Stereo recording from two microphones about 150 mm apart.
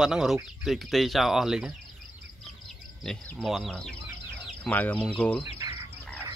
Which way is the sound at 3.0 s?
Centre (ahead or behind).